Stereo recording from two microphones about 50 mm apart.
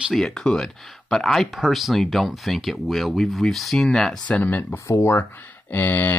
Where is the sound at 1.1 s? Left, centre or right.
Centre.